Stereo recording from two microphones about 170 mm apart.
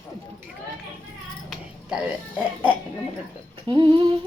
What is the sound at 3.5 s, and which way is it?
Female singing, 25° right (ahead or behind).